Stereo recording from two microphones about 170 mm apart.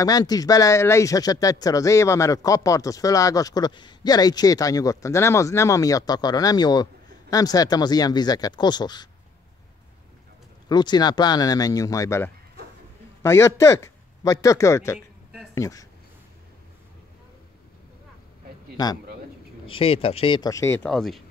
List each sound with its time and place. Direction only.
0.0 s speech: 20° left (ahead or behind)
10.7 s speech: 25° left (ahead or behind)
19.6 s speech: 30° left (ahead or behind); by 20.9 s 15° left (ahead or behind)
20.9 s speech: centre (ahead or behind)